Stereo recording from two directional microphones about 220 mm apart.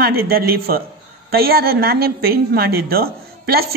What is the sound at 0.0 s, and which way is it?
A woman's voice, 45° right (ahead or behind).